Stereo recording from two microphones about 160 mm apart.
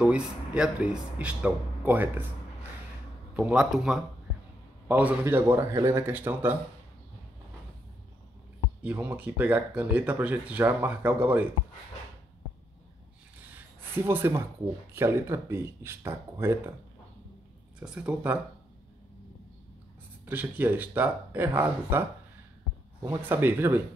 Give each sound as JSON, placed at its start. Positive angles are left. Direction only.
{"t": 0.0, "sound": "speech", "side_deg": -5}
{"t": 3.3, "sound": "speech", "side_deg": -5}
{"t": 8.8, "sound": "speech", "side_deg": -10}
{"t": 13.6, "sound": "a sound", "side_deg": -15}
{"t": 15.0, "sound": "speech", "side_deg": -15}
{"t": 17.7, "sound": "speech", "side_deg": -10}
{"t": 20.2, "sound": "speech", "side_deg": -10}
{"t": 23.0, "sound": "speech", "side_deg": -15}